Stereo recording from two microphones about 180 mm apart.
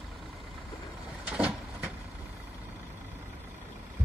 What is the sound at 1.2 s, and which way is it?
Vehicle, 5° right (ahead or behind).